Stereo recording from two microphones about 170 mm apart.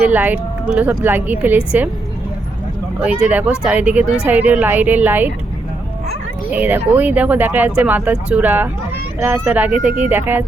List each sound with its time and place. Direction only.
0.1 s speech: 10° right (ahead or behind)
3.0 s speech: 5° right (ahead or behind)
6.5 s speech: 10° right (ahead or behind)